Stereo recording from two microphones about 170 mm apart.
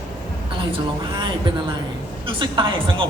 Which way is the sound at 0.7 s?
30° right (ahead or behind).